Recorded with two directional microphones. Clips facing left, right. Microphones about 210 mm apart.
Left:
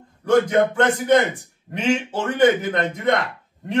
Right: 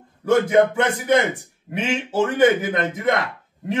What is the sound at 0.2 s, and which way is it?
A man's voice, 10° right (ahead or behind).